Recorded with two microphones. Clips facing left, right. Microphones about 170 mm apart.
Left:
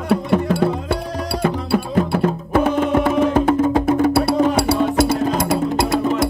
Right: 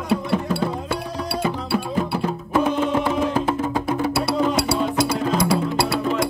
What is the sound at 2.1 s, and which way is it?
Music, 65° left (ahead or behind).